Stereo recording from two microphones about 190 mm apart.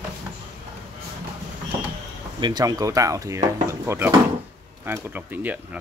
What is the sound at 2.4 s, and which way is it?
Speech, 20° right (ahead or behind).